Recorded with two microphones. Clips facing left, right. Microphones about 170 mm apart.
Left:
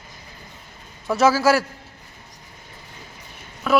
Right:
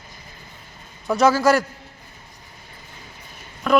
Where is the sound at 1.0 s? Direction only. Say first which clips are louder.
Right 1 dB; 5° left (ahead or behind).